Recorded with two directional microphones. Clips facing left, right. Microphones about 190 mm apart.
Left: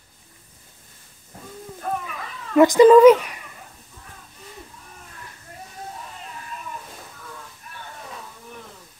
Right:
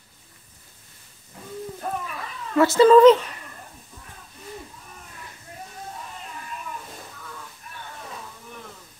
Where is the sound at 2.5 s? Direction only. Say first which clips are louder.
Left 3 dB; 15° left (ahead or behind).